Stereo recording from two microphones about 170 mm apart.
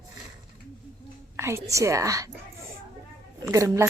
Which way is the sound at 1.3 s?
15° right (ahead or behind).